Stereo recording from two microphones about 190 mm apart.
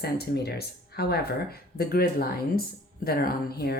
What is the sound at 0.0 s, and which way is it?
Speech, 55° left (ahead or behind).